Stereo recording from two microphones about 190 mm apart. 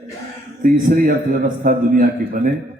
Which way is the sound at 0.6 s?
45° right (ahead or behind).